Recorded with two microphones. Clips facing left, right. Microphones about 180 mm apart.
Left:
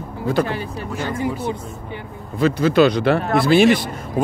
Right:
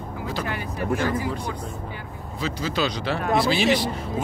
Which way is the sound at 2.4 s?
60° left (ahead or behind).